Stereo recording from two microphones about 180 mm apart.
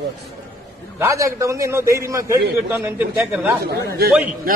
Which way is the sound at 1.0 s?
15° right (ahead or behind).